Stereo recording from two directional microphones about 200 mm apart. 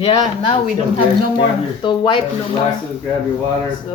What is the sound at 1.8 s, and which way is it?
Speech, 25° left (ahead or behind).